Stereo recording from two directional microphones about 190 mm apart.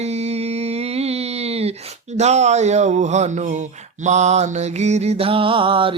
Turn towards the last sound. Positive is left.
turn(degrees=-25)  # may be behind; listen again after turning